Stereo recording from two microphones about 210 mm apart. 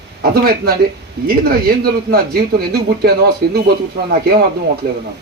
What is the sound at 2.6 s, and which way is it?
A man's voice, 50° right (ahead or behind).